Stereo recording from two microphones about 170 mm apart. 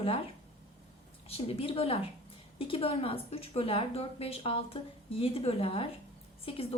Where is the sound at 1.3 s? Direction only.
35° left (ahead or behind).